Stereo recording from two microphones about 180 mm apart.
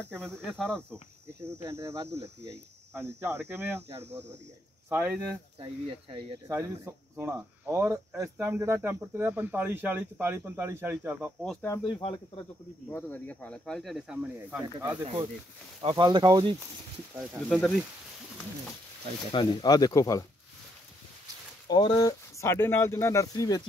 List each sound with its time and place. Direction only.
0.3 s speech: 5° left (ahead or behind)
1.6 s speech: 15° right (ahead or behind)
5.6 s speech: 30° right (ahead or behind)
6.4 s speech: 15° right (ahead or behind)
11.6 s speech: 20° left (ahead or behind)
12.9 s speech: 10° left (ahead or behind)
14.6 s speech: 15° right (ahead or behind)
17.1 s speech: 5° right (ahead or behind)
19.3 s speech: 20° left (ahead or behind)
21.6 s speech: 25° left (ahead or behind)